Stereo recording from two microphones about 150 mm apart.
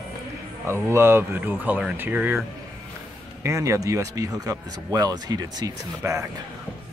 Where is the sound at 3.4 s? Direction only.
20° right (ahead or behind).